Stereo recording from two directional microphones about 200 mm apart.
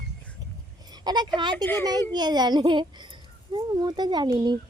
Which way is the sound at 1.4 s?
20° right (ahead or behind).